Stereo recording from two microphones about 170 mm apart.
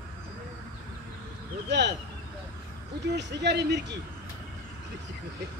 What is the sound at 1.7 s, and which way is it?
Speech, 90° right.